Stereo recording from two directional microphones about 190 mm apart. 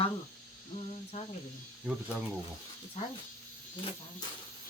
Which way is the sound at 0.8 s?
35° left (ahead or behind).